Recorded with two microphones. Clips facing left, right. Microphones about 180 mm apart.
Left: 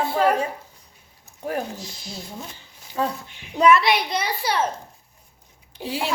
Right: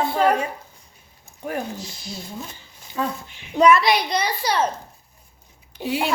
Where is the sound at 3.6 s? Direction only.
Centre (ahead or behind).